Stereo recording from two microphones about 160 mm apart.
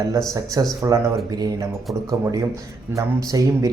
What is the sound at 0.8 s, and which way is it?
Speech, 20° right (ahead or behind).